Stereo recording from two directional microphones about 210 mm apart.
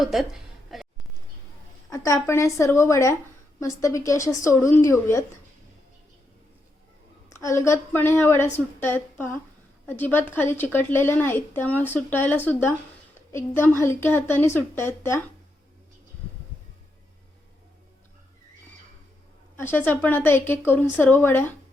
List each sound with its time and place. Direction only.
0.0 s a woman's voice: centre (ahead or behind)
0.7 s a sound: centre (ahead or behind)
1.9 s a woman's voice: 15° left (ahead or behind)
7.3 s a woman's voice: 15° left (ahead or behind)
19.5 s a woman's voice: 10° left (ahead or behind)